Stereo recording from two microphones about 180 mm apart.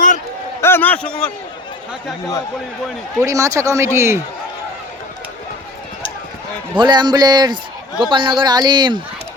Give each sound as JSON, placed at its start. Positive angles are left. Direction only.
{"t": 0.6, "sound": "a sound", "side_deg": 10}
{"t": 1.0, "sound": "a man's voice", "side_deg": 5}
{"t": 3.2, "sound": "a man's voice", "side_deg": -15}
{"t": 6.7, "sound": "speech", "side_deg": -25}